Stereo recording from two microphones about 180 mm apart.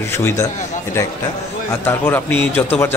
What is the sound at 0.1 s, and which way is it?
Speech, 10° left (ahead or behind).